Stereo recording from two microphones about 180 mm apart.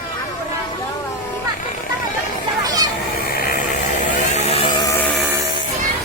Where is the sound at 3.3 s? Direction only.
55° left (ahead or behind).